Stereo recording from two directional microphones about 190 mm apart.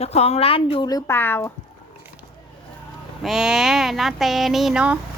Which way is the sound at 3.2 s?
Centre (ahead or behind).